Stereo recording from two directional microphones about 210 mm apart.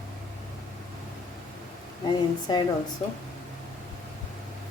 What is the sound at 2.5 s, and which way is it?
Speech, 20° left (ahead or behind).